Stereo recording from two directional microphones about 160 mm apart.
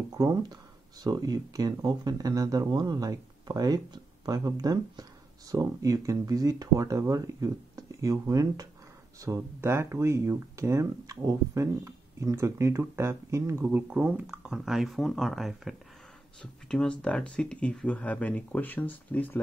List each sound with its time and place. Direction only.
0.1 s speech: 20° right (ahead or behind); by 19.4 s 10° left (ahead or behind)